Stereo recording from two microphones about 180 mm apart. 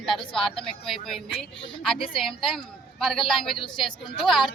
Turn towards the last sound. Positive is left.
turn(degrees=0)  # may be behind; listen again after turning